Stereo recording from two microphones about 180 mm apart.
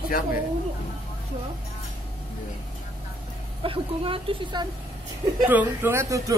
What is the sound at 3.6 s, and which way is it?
A woman's voice, 30° right (ahead or behind).